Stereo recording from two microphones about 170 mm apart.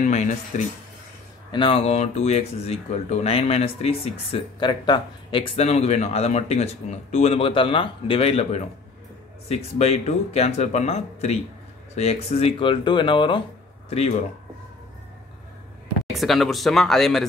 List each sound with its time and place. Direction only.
0.0 s speech: 45° left (ahead or behind)
1.5 s speech: 30° left (ahead or behind)
16.1 s speech: centre (ahead or behind)